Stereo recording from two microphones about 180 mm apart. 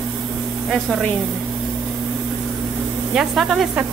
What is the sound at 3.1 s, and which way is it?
Speech, centre (ahead or behind).